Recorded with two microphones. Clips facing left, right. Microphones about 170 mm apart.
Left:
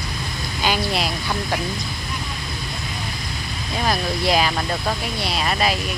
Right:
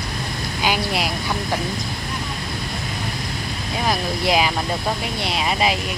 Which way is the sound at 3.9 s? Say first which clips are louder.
Even; 15° right (ahead or behind).